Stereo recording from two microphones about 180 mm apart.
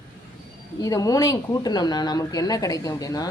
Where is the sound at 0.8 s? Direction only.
20° left (ahead or behind).